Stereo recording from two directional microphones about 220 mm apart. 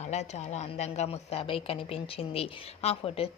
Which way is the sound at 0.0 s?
30° left (ahead or behind).